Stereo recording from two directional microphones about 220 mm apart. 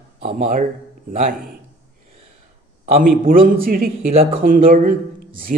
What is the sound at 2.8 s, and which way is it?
A man's voice, 35° right (ahead or behind).